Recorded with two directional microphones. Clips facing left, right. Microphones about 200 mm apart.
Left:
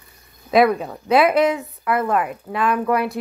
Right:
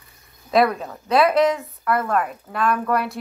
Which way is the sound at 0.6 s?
15° left (ahead or behind).